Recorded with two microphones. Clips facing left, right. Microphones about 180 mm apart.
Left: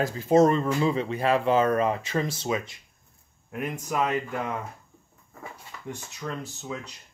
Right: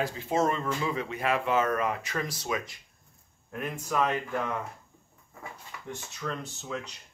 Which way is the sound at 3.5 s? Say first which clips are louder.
Left 2 dB; 10° left (ahead or behind).